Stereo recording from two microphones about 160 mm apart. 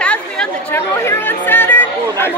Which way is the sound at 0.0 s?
5° left (ahead or behind).